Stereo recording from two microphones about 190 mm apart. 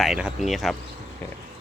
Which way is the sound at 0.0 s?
5° right (ahead or behind).